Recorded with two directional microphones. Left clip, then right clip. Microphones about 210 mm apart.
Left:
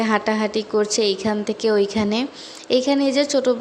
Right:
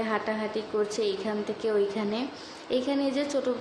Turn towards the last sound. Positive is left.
turn(degrees=45)  # may be behind; listen again after turning